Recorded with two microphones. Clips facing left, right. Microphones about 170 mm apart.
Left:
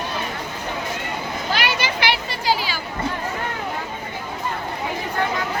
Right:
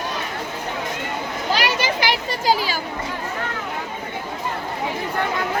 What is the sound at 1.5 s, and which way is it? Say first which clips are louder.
Children playing: right 3 dB; 40° right (ahead or behind).